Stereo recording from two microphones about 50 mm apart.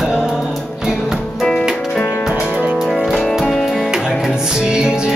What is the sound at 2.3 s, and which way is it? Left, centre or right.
Music, centre.